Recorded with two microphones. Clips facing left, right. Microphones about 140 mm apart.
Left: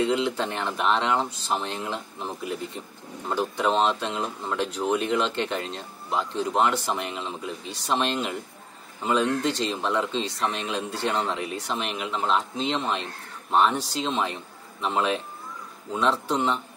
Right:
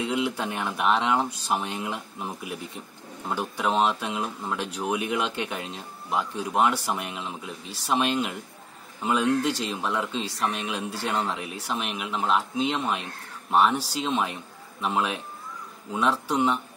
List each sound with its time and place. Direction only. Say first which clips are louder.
0.0 s speech: left 3 dB; 10° right (ahead or behind)